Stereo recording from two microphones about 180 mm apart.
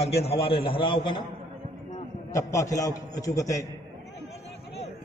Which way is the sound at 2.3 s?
15° left (ahead or behind).